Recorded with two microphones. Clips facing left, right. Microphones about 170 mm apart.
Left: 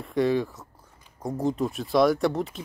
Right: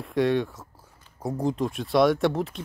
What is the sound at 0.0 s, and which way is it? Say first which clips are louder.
Speech: even; centre (ahead or behind).